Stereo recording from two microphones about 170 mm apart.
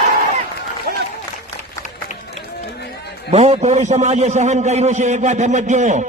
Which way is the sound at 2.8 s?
90° left.